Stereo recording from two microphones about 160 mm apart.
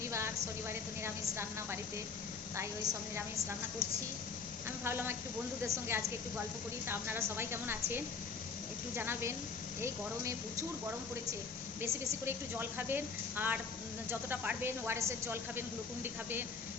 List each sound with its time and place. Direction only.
0.0 s a woman's voice: 15° right (ahead or behind)
4.8 s a woman's voice: 15° right (ahead or behind)
11.8 s a woman's voice: 15° right (ahead or behind)